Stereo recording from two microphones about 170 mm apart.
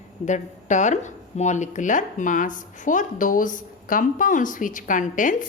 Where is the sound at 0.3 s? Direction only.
45° left (ahead or behind).